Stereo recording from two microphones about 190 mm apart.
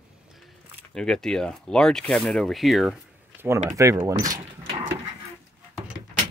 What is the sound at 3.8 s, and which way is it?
Speech, 15° right (ahead or behind).